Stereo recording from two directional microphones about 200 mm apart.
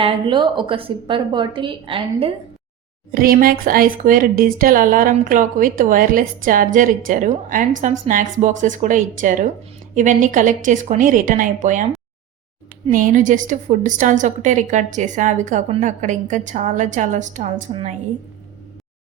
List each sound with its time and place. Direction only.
0.0 s a woman's voice: 25° right (ahead or behind)
3.2 s a woman's voice: 45° right (ahead or behind)
12.9 s a woman's voice: 40° right (ahead or behind)